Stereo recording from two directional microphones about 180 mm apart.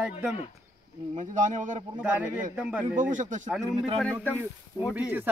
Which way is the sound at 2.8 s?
45° right (ahead or behind).